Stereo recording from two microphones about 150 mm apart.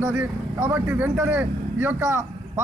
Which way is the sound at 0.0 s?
10° right (ahead or behind).